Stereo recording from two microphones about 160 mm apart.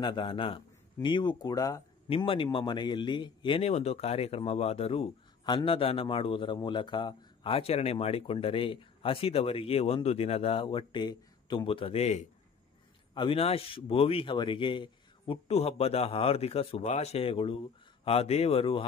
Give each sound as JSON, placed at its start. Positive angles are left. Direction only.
{"t": 0.0, "sound": "speech", "side_deg": 30}
{"t": 2.0, "sound": "speech", "side_deg": 35}